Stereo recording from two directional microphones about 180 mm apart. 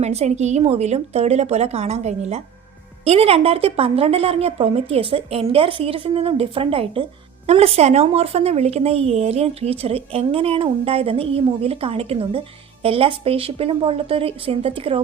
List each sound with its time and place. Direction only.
0.0 s a woman's voice: 35° right (ahead or behind)